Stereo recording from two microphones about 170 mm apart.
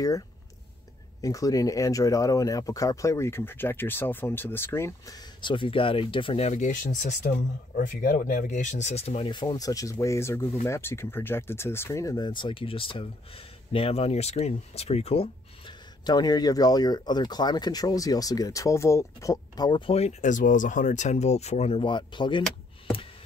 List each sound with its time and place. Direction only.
1.2 s speech: 20° left (ahead or behind)
19.9 s speech: 40° left (ahead or behind)